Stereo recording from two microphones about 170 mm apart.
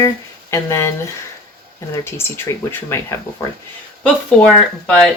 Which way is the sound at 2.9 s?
15° left (ahead or behind).